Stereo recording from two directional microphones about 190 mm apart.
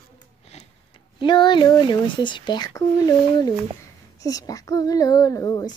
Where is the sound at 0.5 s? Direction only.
35° left (ahead or behind).